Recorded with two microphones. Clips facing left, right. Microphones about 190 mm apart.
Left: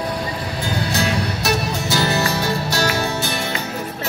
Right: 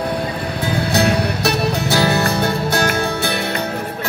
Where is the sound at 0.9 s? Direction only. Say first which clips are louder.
Right 7 dB; 60° right (ahead or behind).